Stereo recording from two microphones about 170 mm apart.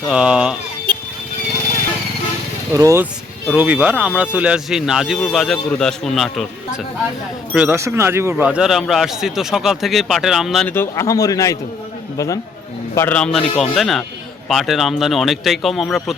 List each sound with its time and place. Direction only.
0.1 s speech: 5° right (ahead or behind)
2.7 s speech: 15° right (ahead or behind); by 6.7 s centre (ahead or behind)
7.5 s speech: 10° right (ahead or behind)
10.7 s a man's voice: 15° left (ahead or behind)